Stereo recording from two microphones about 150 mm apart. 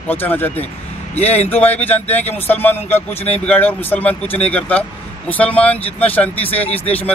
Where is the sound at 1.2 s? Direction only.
45° left (ahead or behind).